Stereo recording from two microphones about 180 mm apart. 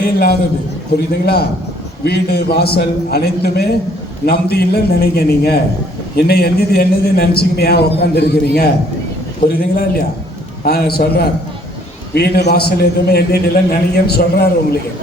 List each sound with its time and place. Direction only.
0.0 s a man's voice: 60° left (ahead or behind)